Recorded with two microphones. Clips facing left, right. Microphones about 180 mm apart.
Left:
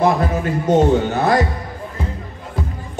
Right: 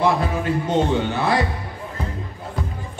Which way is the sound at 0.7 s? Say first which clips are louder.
Left 8 dB; 45° left (ahead or behind).